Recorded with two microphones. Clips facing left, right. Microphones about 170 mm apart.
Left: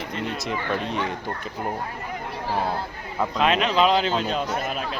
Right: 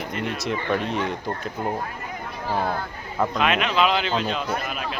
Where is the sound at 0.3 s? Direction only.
Centre (ahead or behind).